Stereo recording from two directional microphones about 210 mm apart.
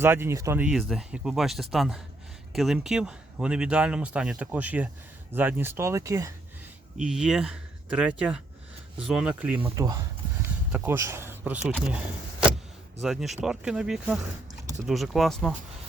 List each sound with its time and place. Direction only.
0.0 s speech: 10° right (ahead or behind)
6.9 s speech: 5° right (ahead or behind)
13.0 s speech: centre (ahead or behind)